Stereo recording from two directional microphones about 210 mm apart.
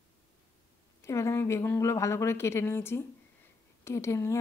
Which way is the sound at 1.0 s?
15° left (ahead or behind).